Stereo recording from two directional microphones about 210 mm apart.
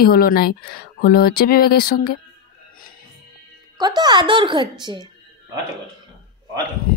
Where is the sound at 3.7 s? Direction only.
20° right (ahead or behind).